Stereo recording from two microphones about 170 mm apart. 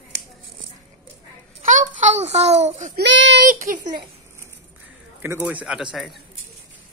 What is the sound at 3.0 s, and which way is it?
Speech, 90° right.